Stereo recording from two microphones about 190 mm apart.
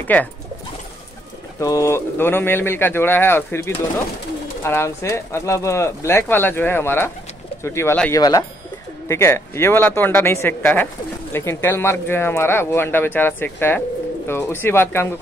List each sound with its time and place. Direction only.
1.6 s speech: 15° left (ahead or behind)